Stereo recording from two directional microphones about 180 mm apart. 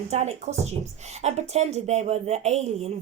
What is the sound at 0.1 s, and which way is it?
Speech, 40° right (ahead or behind).